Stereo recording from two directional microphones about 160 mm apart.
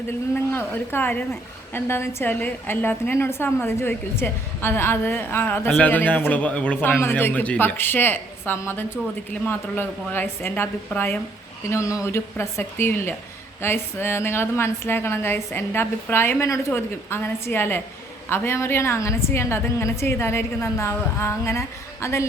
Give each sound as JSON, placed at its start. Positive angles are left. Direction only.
{"t": 0.3, "sound": "a woman's voice", "side_deg": 15}